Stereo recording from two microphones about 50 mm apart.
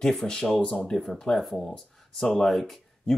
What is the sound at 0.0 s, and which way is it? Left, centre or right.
Speech, centre.